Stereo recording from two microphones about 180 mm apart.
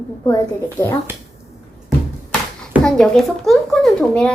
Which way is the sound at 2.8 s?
5° left (ahead or behind).